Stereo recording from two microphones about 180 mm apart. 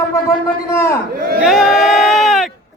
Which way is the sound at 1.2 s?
55° right (ahead or behind).